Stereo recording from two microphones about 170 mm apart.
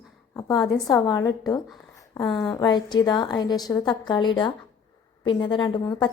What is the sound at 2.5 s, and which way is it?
A woman's voice, 25° left (ahead or behind).